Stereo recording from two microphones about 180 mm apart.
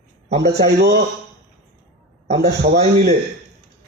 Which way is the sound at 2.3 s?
65° right (ahead or behind).